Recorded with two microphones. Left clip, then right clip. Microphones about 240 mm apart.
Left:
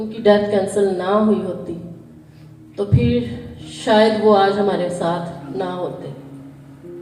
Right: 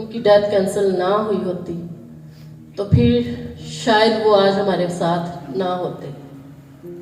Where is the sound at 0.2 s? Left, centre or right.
Right.